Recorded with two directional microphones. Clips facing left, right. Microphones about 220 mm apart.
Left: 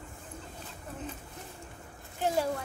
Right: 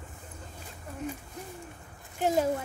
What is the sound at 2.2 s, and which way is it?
Speech, 20° right (ahead or behind).